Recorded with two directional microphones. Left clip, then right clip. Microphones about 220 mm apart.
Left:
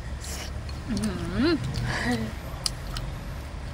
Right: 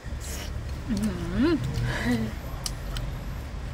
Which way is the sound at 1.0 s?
15° right (ahead or behind).